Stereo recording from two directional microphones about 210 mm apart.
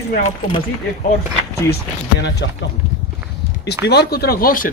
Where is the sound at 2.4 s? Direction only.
55° left (ahead or behind).